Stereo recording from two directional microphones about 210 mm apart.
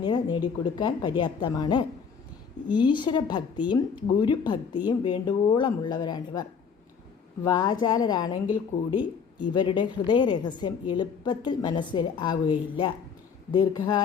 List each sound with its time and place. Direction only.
0.0 s a woman's voice: 20° left (ahead or behind)
7.4 s a woman's voice: 20° left (ahead or behind)